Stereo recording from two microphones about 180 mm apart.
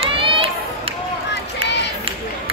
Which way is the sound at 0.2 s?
30° right (ahead or behind).